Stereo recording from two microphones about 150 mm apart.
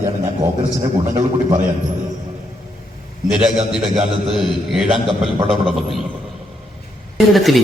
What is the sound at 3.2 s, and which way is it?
A man's voice, 5° right (ahead or behind).